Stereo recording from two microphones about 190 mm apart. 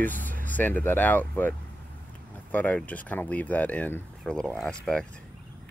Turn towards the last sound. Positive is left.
turn(degrees=5)  # may be behind; listen again after turning